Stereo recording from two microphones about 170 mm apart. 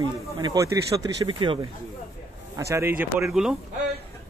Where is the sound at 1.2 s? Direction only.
30° right (ahead or behind).